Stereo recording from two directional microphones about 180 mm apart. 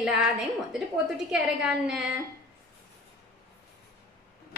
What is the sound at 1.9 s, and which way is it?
Speech, 5° right (ahead or behind).